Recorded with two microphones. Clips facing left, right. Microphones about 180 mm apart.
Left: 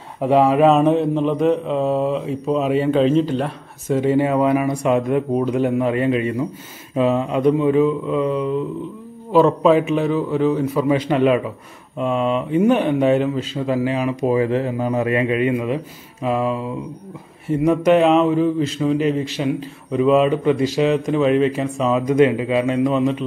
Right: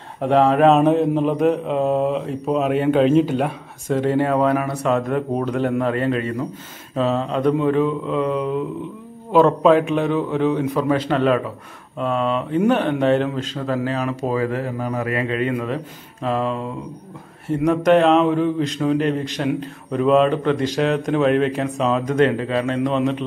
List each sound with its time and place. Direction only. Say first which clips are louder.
0.2 s a man's voice: left 1 dB; 10° left (ahead or behind); by 3.9 s 5° right (ahead or behind)
3.9 s a man's voice: left 1 dB; 10° left (ahead or behind)
17.6 s a man's voice: left 1 dB; 5° left (ahead or behind)